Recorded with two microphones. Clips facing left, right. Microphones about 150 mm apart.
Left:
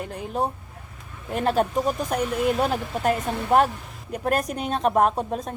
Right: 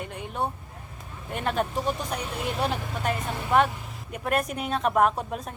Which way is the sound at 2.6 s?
45° left (ahead or behind).